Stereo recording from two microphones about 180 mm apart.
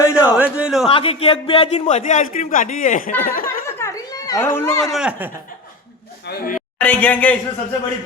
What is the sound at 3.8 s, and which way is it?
Chatter, 15° left (ahead or behind).